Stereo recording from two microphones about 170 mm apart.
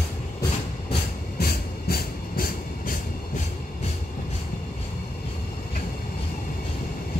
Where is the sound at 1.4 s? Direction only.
60° left (ahead or behind).